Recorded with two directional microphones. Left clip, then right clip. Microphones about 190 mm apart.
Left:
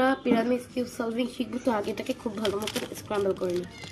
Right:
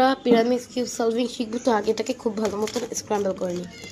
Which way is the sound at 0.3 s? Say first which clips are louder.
Right 6 dB; 25° right (ahead or behind).